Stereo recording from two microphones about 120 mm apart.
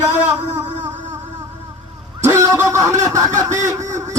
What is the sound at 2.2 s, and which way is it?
Speech, 25° right (ahead or behind).